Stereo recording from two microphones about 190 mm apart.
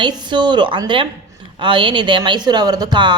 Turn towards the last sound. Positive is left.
turn(degrees=-25)  # may be behind; listen again after turning